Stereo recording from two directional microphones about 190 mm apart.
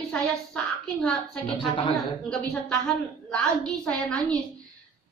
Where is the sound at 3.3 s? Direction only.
5° left (ahead or behind).